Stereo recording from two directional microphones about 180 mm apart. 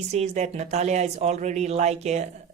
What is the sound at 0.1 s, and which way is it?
Speech, 40° right (ahead or behind).